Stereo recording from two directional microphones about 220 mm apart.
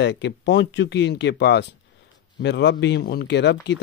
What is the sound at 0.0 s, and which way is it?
Speech, 55° left (ahead or behind).